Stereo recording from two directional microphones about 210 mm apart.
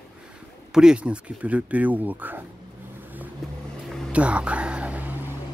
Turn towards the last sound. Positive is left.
turn(degrees=-5)  # may be behind; listen again after turning